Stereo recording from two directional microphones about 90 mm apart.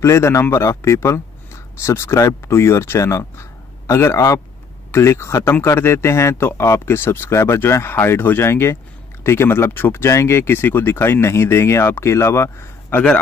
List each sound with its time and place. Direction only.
0.0 s a man's voice: 30° left (ahead or behind)